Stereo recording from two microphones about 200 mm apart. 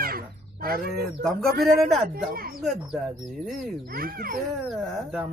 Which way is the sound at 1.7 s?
Centre (ahead or behind).